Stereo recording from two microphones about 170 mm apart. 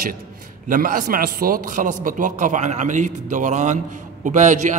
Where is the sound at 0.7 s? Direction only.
55° right (ahead or behind).